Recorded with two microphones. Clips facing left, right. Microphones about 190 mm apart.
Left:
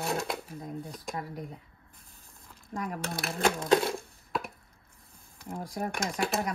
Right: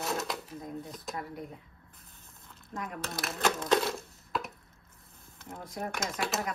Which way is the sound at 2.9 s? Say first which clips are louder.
Left 3 dB; 55° left (ahead or behind).